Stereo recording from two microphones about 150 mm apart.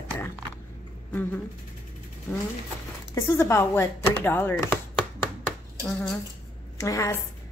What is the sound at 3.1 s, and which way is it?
Speech, 20° left (ahead or behind).